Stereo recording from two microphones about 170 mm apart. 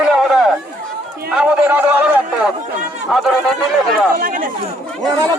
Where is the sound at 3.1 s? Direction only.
Centre (ahead or behind).